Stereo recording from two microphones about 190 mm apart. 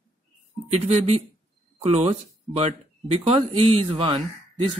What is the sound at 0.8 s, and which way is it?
Speech, 35° right (ahead or behind).